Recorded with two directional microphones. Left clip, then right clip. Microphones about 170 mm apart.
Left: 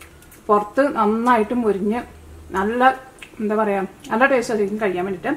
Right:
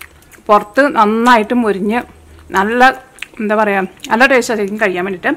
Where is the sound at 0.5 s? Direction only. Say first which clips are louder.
Right 7 dB; 25° right (ahead or behind).